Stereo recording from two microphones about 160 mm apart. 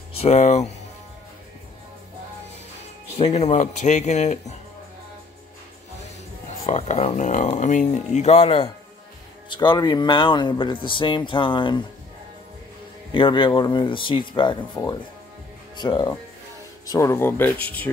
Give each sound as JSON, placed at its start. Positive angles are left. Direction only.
{"t": 0.1, "sound": "speech", "side_deg": 40}
{"t": 3.2, "sound": "speech", "side_deg": 40}
{"t": 6.6, "sound": "speech", "side_deg": 45}
{"t": 9.5, "sound": "speech", "side_deg": 30}
{"t": 13.1, "sound": "speech", "side_deg": 30}
{"t": 15.7, "sound": "speech", "side_deg": 30}